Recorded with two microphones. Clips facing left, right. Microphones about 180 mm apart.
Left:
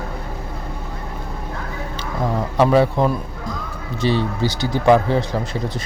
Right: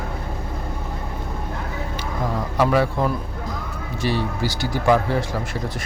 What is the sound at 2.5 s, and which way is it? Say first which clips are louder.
A man's voice: left 4 dB; 25° left (ahead or behind).